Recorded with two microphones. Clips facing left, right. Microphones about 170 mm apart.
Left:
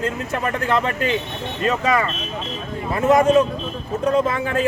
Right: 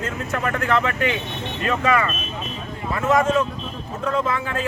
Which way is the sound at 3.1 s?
15° left (ahead or behind).